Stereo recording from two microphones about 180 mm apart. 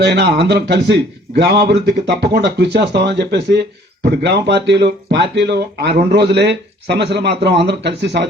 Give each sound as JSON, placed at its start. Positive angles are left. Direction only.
{"t": 0.0, "sound": "speech", "side_deg": -65}